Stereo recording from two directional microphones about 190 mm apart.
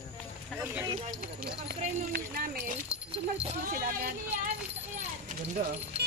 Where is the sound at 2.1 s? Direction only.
55° right (ahead or behind).